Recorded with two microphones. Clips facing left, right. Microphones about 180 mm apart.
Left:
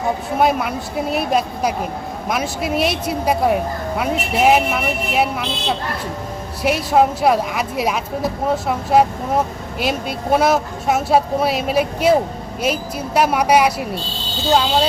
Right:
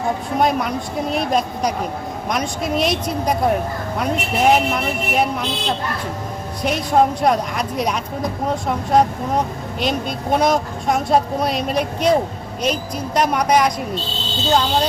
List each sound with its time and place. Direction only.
0.3 s speech: 5° left (ahead or behind)